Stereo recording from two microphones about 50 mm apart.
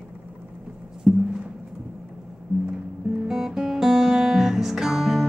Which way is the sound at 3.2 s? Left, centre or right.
Centre.